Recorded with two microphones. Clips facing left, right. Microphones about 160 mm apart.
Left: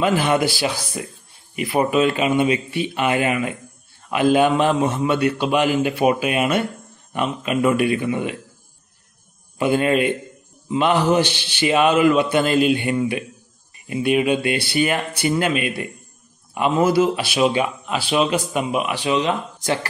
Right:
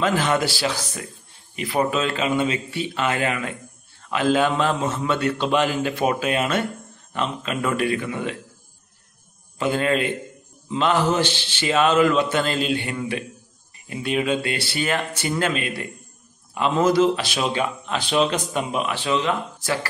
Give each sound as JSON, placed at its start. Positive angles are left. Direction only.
{"t": 0.0, "sound": "speech", "side_deg": 15}
{"t": 9.6, "sound": "speech", "side_deg": 15}